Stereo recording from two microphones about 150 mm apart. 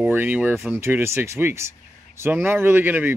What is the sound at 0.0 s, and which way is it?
Speech, 10° right (ahead or behind).